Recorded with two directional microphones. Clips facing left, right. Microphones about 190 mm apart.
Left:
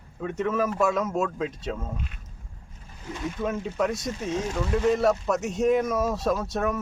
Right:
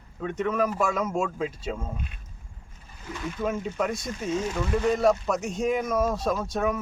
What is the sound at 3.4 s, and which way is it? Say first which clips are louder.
Speech: left 1 dB; centre (ahead or behind).